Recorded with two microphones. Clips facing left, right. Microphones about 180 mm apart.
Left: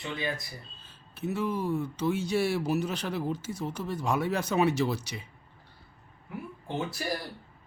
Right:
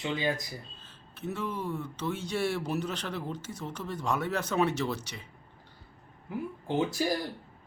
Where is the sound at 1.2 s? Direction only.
10° left (ahead or behind).